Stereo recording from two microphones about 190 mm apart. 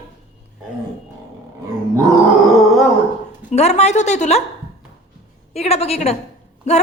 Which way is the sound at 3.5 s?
35° left (ahead or behind).